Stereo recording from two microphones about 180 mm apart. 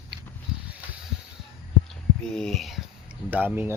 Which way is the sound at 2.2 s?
5° left (ahead or behind).